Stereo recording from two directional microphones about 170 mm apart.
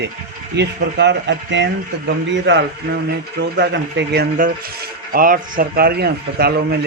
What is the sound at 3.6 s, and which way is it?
A man's voice, 75° right (ahead or behind).